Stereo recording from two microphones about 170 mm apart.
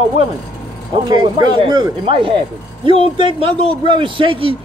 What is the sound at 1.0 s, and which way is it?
A man's voice, 25° right (ahead or behind).